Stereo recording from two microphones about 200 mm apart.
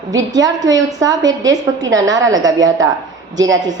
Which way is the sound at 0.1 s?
20° right (ahead or behind).